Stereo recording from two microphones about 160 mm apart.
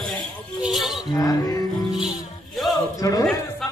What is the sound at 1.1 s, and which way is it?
Music, 25° left (ahead or behind).